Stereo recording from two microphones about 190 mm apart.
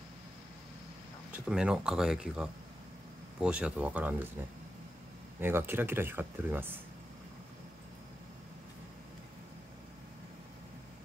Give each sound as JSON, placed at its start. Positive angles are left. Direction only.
{"t": 1.3, "sound": "speech", "side_deg": -5}
{"t": 5.4, "sound": "speech", "side_deg": -10}